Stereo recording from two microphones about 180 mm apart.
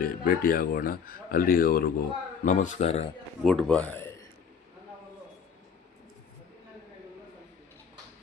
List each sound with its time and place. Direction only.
0.0 s speech: 55° left (ahead or behind)
2.4 s speech: 45° left (ahead or behind)
3.4 s speech: centre (ahead or behind)